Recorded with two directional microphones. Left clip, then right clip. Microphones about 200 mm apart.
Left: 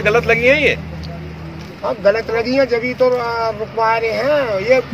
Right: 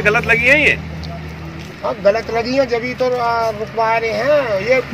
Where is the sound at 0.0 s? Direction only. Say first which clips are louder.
Even; 55° left (ahead or behind).